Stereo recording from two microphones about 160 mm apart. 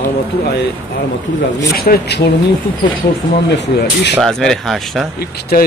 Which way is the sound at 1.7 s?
70° left (ahead or behind).